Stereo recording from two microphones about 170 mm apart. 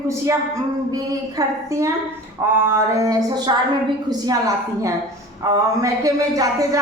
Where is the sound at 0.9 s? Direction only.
20° right (ahead or behind).